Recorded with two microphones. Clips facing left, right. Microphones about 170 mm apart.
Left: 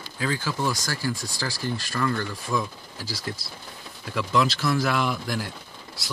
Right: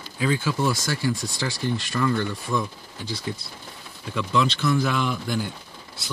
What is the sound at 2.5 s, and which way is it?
Speech, 5° left (ahead or behind).